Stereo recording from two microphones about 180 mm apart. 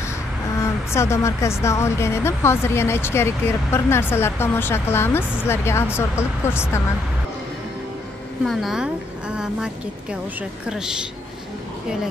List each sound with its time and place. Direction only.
0.6 s speech: 15° left (ahead or behind)
8.5 s a woman's voice: centre (ahead or behind)
10.7 s a woman's voice: 5° right (ahead or behind)